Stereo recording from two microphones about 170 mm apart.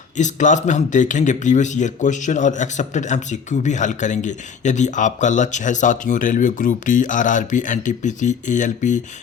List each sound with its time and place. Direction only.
0.2 s speech: 45° left (ahead or behind)